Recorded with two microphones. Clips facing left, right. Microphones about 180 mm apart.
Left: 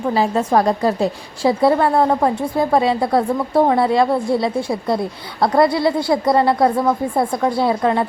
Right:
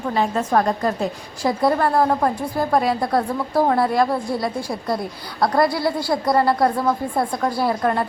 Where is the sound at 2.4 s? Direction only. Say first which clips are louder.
Left 3 dB; 25° left (ahead or behind).